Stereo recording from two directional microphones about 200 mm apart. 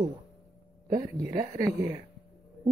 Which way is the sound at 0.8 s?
20° right (ahead or behind).